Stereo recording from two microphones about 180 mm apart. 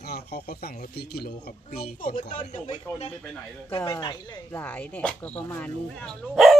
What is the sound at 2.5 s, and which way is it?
Speech, 35° left (ahead or behind).